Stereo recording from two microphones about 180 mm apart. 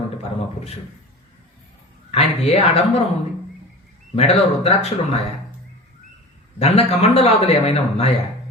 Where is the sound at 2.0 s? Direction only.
35° left (ahead or behind).